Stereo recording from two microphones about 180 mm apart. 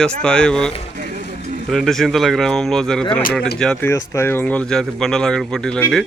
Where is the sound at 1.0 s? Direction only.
45° right (ahead or behind).